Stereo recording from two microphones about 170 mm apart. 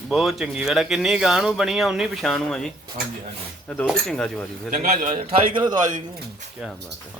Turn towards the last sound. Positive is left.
turn(degrees=-25)  # may be behind; listen again after turning